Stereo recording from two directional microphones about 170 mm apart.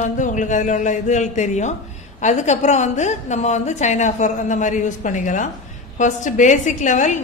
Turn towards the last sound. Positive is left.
turn(degrees=45)  # may be behind; listen again after turning